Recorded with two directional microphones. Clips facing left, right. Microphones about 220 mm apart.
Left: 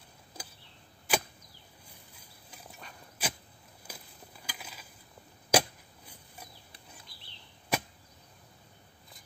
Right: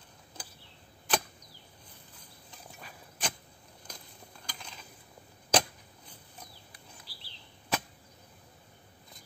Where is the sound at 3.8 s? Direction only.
5° left (ahead or behind).